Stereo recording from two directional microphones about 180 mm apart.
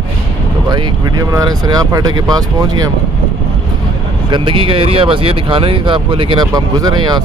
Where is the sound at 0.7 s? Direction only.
20° right (ahead or behind).